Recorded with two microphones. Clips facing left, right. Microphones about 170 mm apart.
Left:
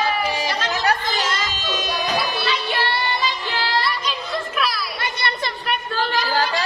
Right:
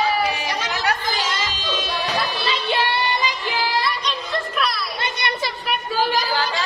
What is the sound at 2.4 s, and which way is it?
Music, 20° right (ahead or behind).